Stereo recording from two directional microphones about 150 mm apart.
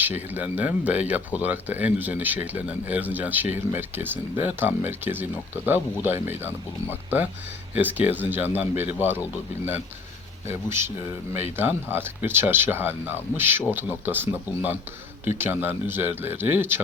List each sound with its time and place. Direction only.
0.0 s speech: 10° right (ahead or behind)
7.8 s speech: 10° right (ahead or behind)